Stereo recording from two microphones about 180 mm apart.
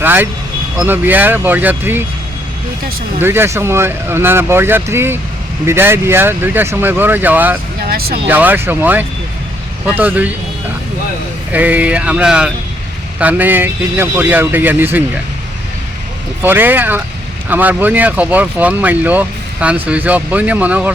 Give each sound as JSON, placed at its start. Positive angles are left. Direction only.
{"t": 0.0, "sound": "speech", "side_deg": -10}
{"t": 3.2, "sound": "speech", "side_deg": -15}
{"t": 7.9, "sound": "speech", "side_deg": -60}
{"t": 8.3, "sound": "speech", "side_deg": -10}
{"t": 11.5, "sound": "speech", "side_deg": -10}
{"t": 16.4, "sound": "speech", "side_deg": -10}